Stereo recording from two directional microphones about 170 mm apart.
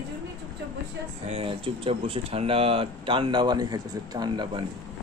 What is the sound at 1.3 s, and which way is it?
Speech, 30° right (ahead or behind).